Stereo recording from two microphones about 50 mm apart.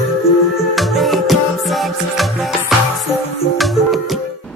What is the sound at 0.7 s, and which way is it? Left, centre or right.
Music, centre.